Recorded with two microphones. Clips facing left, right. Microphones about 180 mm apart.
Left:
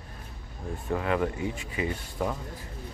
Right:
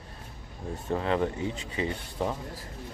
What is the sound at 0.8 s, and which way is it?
Speech, 25° right (ahead or behind).